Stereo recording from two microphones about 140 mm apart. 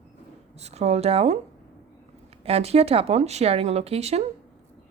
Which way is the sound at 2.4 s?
45° right (ahead or behind).